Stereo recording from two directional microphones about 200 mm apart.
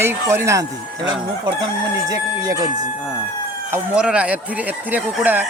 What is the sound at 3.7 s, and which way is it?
Speech, 5° right (ahead or behind).